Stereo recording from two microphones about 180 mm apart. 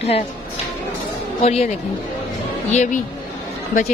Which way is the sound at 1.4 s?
35° left (ahead or behind).